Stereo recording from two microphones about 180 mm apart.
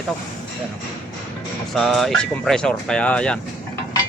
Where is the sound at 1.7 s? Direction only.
Centre (ahead or behind).